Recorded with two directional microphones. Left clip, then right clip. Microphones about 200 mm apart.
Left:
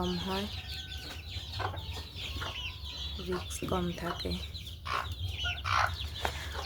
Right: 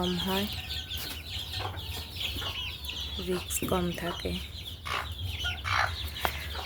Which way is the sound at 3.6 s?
20° right (ahead or behind).